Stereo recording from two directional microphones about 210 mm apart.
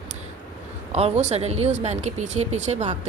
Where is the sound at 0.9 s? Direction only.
30° right (ahead or behind).